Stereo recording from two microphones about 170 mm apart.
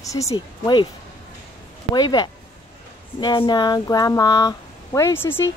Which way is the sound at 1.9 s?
25° left (ahead or behind).